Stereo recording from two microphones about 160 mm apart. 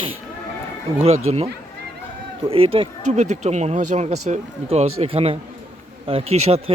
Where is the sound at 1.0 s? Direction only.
40° right (ahead or behind).